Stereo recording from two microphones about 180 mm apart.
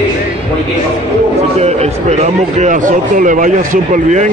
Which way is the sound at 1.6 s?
35° right (ahead or behind).